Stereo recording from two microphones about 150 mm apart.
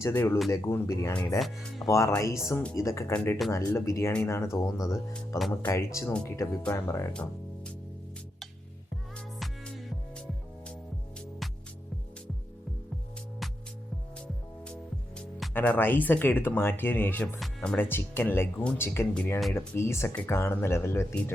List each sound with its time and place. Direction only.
0.0 s speech: 15° left (ahead or behind)
1.4 s speech: centre (ahead or behind)
1.9 s speech: 20° left (ahead or behind)
7.1 s speech: 5° left (ahead or behind)
9.1 s music: 5° left (ahead or behind)
15.1 s speech: 10° left (ahead or behind)
19.5 s speech: 15° left (ahead or behind)